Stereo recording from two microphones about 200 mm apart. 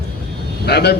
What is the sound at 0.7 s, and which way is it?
Speech, 55° left (ahead or behind).